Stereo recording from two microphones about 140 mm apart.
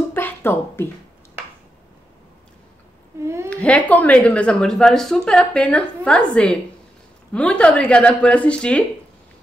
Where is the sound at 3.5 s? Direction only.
10° left (ahead or behind).